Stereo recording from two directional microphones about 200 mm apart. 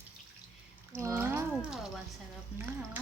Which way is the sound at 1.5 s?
Centre (ahead or behind).